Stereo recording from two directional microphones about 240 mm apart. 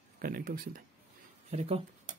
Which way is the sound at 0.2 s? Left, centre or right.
Right.